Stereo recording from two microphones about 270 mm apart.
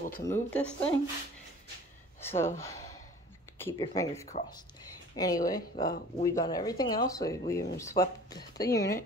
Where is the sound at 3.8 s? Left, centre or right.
Centre.